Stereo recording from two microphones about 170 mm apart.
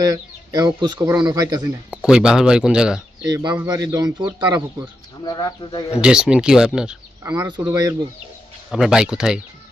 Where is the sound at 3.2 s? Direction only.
25° right (ahead or behind).